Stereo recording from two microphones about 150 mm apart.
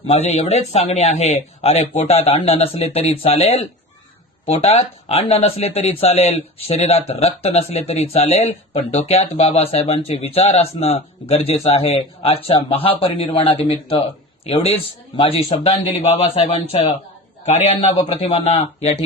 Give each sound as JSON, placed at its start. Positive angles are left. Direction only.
{"t": 0.1, "sound": "speech", "side_deg": 45}
{"t": 15.9, "sound": "speech", "side_deg": 45}